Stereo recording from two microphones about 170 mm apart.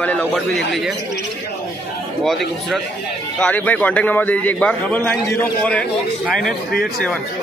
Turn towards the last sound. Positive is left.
turn(degrees=5)  # may be behind; listen again after turning